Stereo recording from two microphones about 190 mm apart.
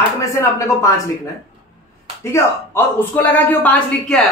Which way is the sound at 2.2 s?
15° left (ahead or behind).